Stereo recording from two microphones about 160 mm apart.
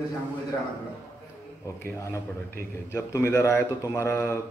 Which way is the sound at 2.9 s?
15° left (ahead or behind).